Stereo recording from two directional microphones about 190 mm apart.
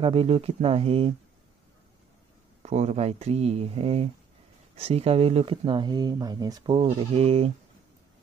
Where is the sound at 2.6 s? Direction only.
35° right (ahead or behind).